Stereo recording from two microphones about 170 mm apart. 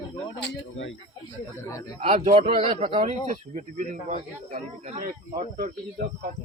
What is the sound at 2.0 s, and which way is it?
A man's voice, 40° right (ahead or behind).